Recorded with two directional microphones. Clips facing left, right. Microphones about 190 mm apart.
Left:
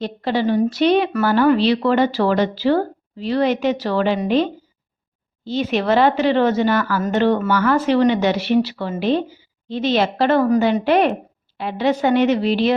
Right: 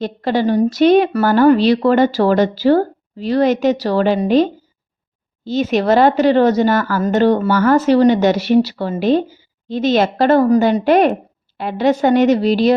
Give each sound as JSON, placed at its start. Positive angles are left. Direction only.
{"t": 0.0, "sound": "a woman's voice", "side_deg": -45}
{"t": 5.5, "sound": "a woman's voice", "side_deg": -45}